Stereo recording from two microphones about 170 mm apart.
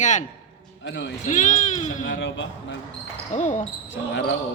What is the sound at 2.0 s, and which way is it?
Speech, 90° left.